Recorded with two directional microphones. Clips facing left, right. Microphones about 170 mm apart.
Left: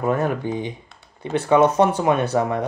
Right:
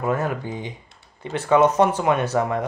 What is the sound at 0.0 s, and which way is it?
Speech, 25° left (ahead or behind).